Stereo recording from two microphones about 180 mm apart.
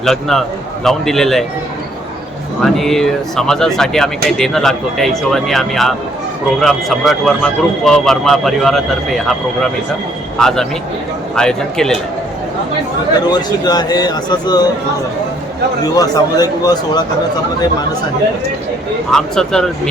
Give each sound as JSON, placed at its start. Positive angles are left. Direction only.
{"t": 0.0, "sound": "speech", "side_deg": 0}
{"t": 2.6, "sound": "speech", "side_deg": 0}
{"t": 10.4, "sound": "speech", "side_deg": 5}
{"t": 13.3, "sound": "speech", "side_deg": 20}
{"t": 16.0, "sound": "speech", "side_deg": 20}
{"t": 19.1, "sound": "speech", "side_deg": 5}